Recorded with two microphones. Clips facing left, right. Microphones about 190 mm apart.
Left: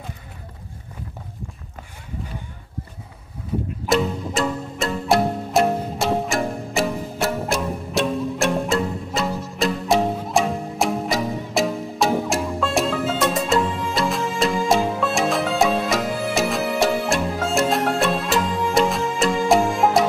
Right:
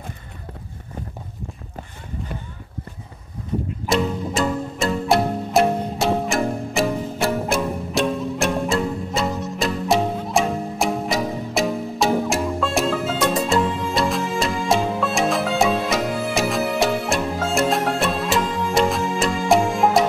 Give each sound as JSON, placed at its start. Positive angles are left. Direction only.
{"t": 3.8, "sound": "music", "side_deg": 0}